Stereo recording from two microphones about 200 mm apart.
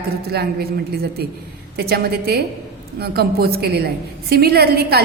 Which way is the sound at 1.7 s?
50° right (ahead or behind).